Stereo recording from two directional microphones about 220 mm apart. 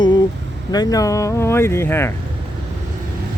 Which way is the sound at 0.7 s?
15° left (ahead or behind).